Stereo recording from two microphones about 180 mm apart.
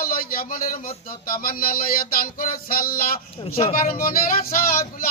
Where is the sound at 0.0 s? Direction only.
50° left (ahead or behind).